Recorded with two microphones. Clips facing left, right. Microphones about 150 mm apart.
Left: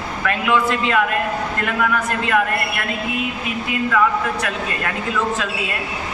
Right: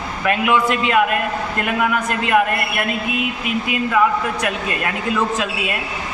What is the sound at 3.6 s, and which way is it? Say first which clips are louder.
Speech: right 1 dB; 15° right (ahead or behind).